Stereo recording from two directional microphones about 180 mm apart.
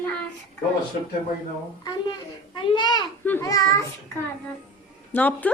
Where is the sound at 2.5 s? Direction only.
25° left (ahead or behind).